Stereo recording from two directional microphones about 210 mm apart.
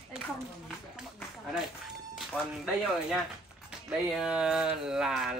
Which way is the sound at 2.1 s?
Centre (ahead or behind).